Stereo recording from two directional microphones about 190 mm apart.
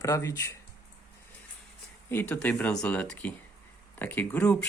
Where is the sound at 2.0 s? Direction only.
10° left (ahead or behind).